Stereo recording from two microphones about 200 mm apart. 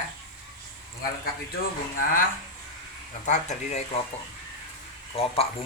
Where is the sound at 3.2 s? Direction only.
35° left (ahead or behind).